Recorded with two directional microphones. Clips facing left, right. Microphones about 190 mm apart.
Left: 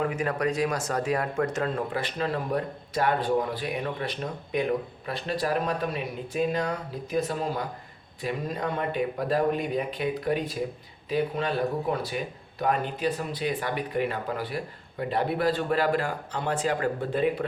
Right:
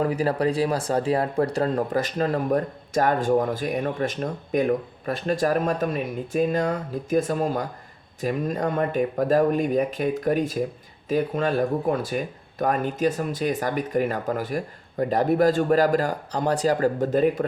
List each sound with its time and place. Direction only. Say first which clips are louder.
0.0 s speech: right 5 dB; 35° right (ahead or behind)